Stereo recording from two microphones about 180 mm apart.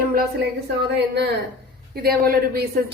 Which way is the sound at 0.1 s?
60° right (ahead or behind).